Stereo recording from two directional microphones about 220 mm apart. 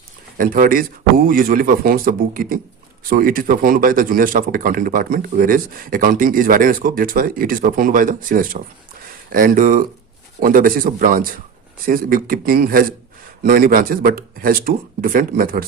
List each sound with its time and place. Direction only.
0.3 s a man's voice: 40° right (ahead or behind)